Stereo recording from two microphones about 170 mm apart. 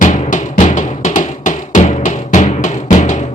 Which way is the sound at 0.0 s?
50° left (ahead or behind).